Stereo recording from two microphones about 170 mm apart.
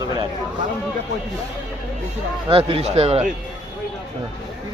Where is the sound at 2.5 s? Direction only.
35° right (ahead or behind).